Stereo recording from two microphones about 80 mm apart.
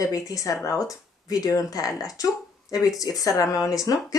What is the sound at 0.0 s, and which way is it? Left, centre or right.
Speech, left.